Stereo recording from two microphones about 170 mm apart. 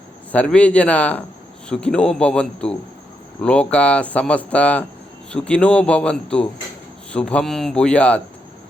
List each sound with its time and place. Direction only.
0.3 s a man's voice: 5° left (ahead or behind)